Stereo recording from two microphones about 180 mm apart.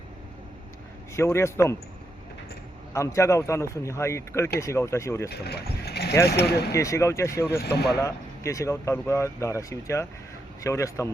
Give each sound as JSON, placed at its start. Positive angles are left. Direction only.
{"t": 1.1, "sound": "speech", "side_deg": 15}
{"t": 2.9, "sound": "speech", "side_deg": 15}
{"t": 5.3, "sound": "speech", "side_deg": 65}
{"t": 6.7, "sound": "speech", "side_deg": 15}
{"t": 7.6, "sound": "speech", "side_deg": 65}
{"t": 7.9, "sound": "speech", "side_deg": 15}